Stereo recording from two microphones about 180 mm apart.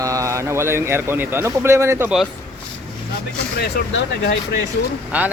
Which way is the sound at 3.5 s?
65° left (ahead or behind).